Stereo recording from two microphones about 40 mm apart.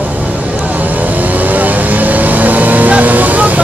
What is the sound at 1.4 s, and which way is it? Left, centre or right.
Vehicle, right.